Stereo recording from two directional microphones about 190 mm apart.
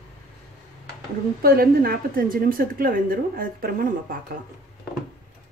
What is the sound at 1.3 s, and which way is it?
A woman's voice, 50° right (ahead or behind).